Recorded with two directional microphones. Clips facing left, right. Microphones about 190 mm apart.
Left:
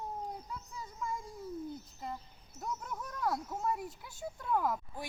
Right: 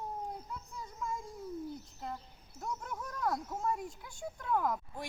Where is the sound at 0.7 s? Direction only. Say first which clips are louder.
Even; centre (ahead or behind).